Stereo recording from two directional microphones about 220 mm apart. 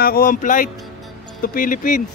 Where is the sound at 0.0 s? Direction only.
40° left (ahead or behind).